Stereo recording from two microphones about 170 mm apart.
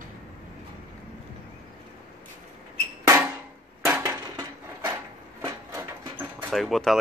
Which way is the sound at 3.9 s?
20° right (ahead or behind).